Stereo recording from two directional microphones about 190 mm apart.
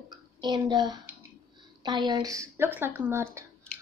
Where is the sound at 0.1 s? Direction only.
25° right (ahead or behind).